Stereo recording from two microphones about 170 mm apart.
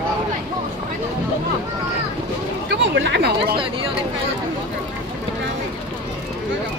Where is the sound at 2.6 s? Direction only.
85° right.